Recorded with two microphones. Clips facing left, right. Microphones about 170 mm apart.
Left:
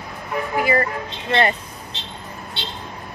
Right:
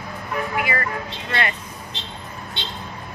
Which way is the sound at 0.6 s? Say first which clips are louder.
Left 8 dB; 35° left (ahead or behind).